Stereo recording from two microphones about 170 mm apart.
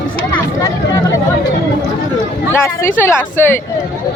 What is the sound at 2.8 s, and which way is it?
Speech, 15° left (ahead or behind).